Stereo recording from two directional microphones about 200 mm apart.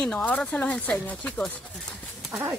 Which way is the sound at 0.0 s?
5° left (ahead or behind).